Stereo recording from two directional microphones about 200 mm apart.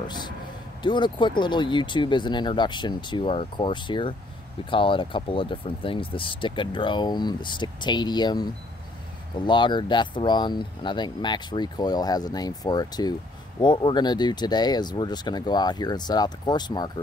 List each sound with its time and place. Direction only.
0.8 s speech: 20° left (ahead or behind)
9.5 s speech: 25° left (ahead or behind)